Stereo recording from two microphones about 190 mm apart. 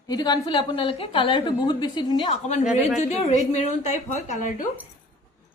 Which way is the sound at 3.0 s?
40° left (ahead or behind).